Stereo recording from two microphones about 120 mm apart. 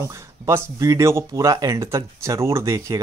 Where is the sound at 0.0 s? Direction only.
25° right (ahead or behind).